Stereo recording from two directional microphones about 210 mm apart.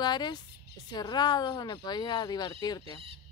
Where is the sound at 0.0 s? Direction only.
20° left (ahead or behind).